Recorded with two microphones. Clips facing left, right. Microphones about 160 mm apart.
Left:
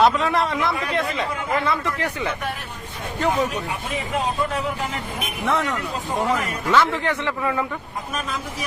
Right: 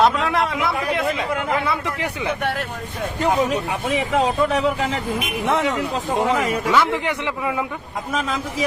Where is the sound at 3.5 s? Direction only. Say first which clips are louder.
Right 6 dB; 90° right.